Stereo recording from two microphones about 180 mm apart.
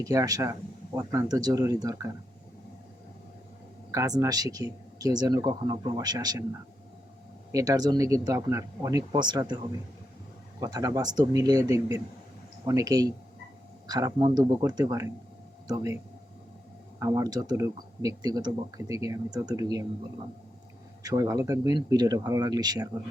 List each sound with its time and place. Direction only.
0.0 s speech: 20° right (ahead or behind)
3.9 s speech: 20° right (ahead or behind)
7.5 s speech: 20° right (ahead or behind)
10.6 s speech: 20° right (ahead or behind)
17.0 s speech: 20° right (ahead or behind)
21.0 s speech: 20° right (ahead or behind)